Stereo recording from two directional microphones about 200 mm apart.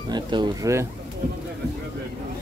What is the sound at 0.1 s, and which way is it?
Speech, 20° right (ahead or behind).